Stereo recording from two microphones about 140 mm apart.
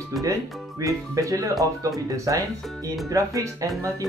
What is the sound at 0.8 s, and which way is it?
Speech, 25° right (ahead or behind).